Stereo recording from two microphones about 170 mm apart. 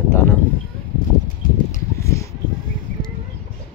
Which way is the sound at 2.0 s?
15° left (ahead or behind).